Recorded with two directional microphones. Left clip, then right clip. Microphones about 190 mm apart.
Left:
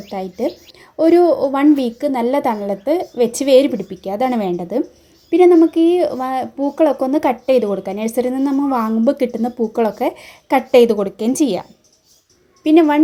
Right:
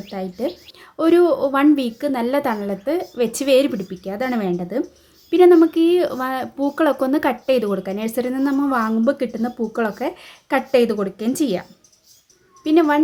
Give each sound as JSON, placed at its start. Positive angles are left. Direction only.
{"t": 0.2, "sound": "speech", "side_deg": 15}
{"t": 12.6, "sound": "speech", "side_deg": 15}